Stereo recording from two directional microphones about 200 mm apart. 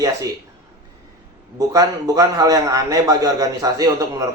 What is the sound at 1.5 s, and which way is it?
A man's voice, 15° right (ahead or behind).